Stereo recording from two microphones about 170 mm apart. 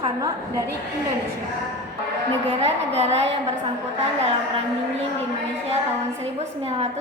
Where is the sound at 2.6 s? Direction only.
40° right (ahead or behind).